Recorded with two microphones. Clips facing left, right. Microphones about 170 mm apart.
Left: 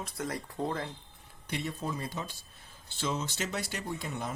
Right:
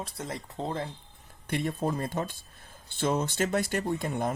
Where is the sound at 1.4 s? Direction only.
50° right (ahead or behind).